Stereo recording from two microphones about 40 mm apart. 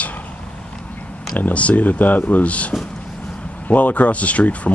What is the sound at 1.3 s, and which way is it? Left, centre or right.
Speech, left.